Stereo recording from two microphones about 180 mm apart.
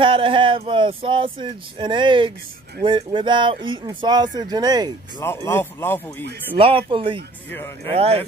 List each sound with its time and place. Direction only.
0.0 s speech: 30° right (ahead or behind)
5.2 s speech: 15° left (ahead or behind)
6.5 s speech: 30° right (ahead or behind)
7.5 s speech: 15° left (ahead or behind)
7.9 s speech: 35° right (ahead or behind)